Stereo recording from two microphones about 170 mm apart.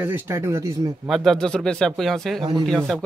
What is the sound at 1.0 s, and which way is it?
Speech, centre (ahead or behind).